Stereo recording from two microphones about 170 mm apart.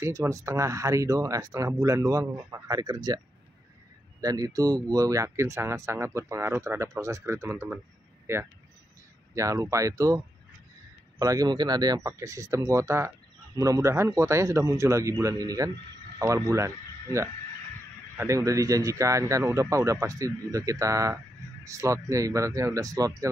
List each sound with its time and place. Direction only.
0.0 s speech: 15° right (ahead or behind)
4.2 s speech: 20° right (ahead or behind)